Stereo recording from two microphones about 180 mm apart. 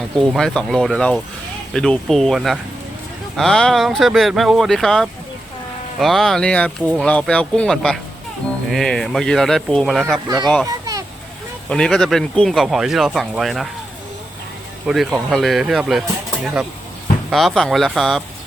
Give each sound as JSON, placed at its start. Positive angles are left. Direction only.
{"t": 0.3, "sound": "speech", "side_deg": 5}
{"t": 10.7, "sound": "a sound", "side_deg": -20}
{"t": 11.7, "sound": "speech", "side_deg": 5}
{"t": 14.8, "sound": "speech", "side_deg": 0}